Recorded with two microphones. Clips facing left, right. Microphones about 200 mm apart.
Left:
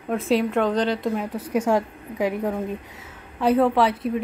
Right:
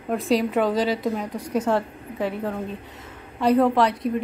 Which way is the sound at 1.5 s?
10° left (ahead or behind).